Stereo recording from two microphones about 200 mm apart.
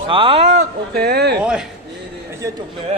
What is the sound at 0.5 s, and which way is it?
Speech, 55° right (ahead or behind).